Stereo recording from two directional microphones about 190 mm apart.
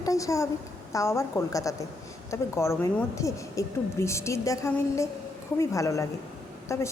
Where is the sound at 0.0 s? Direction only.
15° left (ahead or behind).